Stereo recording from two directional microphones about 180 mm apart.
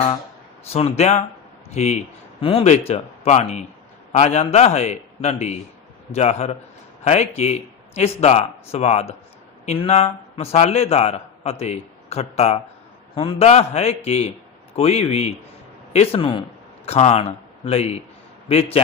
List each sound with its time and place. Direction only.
0.7 s a man's voice: 35° left (ahead or behind)